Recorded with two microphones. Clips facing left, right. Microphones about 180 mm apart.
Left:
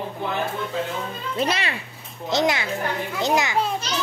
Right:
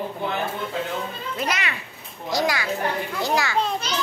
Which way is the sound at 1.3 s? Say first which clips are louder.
Left 4 dB; 30° left (ahead or behind).